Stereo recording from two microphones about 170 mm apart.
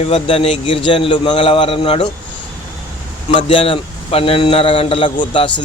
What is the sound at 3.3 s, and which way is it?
Speech, 30° left (ahead or behind).